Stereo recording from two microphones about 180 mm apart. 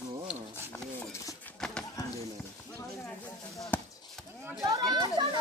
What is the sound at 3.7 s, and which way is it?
Speech, 10° left (ahead or behind).